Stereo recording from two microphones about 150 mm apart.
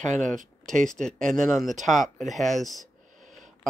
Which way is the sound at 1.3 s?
Centre (ahead or behind).